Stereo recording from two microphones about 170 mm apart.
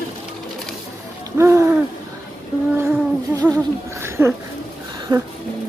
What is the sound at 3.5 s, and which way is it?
Speech, 15° right (ahead or behind).